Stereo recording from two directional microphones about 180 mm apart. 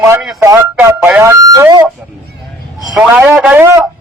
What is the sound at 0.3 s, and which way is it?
A man's voice, 15° right (ahead or behind).